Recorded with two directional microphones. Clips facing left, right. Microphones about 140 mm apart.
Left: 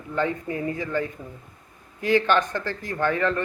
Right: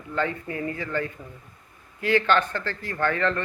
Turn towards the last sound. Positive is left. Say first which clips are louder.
# left 1 dB
turn(degrees=10)  # may be behind; listen again after turning